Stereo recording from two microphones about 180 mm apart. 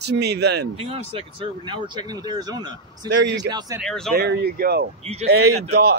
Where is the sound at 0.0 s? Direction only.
65° right (ahead or behind).